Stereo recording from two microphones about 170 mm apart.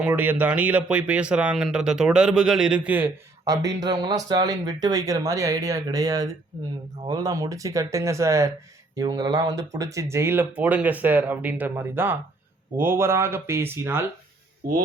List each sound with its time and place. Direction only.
0.0 s speech: 10° right (ahead or behind)
3.4 s speech: 20° right (ahead or behind)